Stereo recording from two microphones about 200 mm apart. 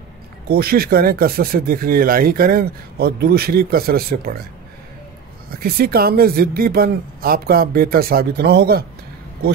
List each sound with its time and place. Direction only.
0.5 s speech: 50° right (ahead or behind)
5.5 s speech: 50° right (ahead or behind)